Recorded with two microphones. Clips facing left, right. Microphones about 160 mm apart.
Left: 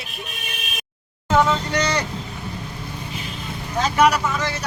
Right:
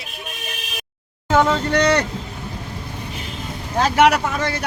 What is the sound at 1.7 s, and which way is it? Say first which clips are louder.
Speech: right 5 dB; 60° right (ahead or behind).